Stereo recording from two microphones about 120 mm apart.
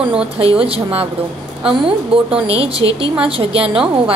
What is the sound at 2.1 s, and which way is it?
A woman's voice, 50° right (ahead or behind).